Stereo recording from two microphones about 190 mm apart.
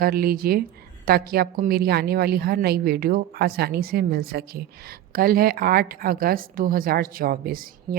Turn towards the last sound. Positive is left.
turn(degrees=-50)  # may be behind; listen again after turning